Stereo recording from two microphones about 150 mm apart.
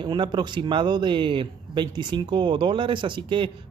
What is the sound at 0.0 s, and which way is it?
Speech, 30° right (ahead or behind).